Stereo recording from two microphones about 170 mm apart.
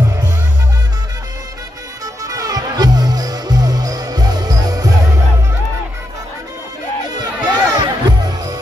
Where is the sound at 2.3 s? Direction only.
20° right (ahead or behind).